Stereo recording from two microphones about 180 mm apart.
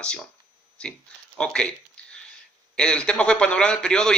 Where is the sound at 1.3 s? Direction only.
5° left (ahead or behind).